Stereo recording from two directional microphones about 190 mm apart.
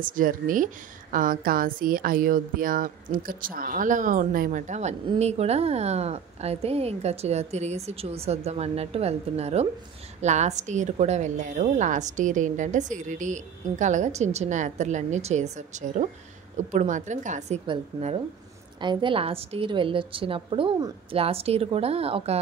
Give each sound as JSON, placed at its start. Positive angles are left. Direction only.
{"t": 0.0, "sound": "a woman's voice", "side_deg": -45}